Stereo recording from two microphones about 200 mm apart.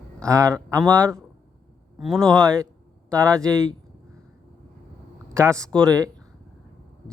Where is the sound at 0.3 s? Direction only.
15° right (ahead or behind).